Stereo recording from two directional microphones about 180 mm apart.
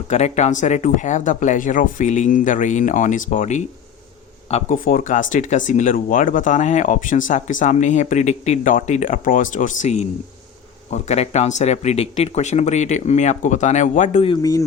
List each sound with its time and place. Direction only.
0.1 s speech: 40° left (ahead or behind)
14.3 s speech: 20° left (ahead or behind)